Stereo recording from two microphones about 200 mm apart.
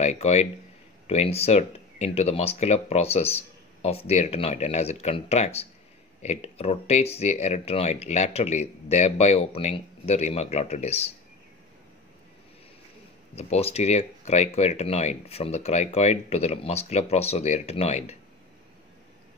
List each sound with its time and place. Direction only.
0.0 s speech: 35° left (ahead or behind)
13.4 s speech: 30° left (ahead or behind)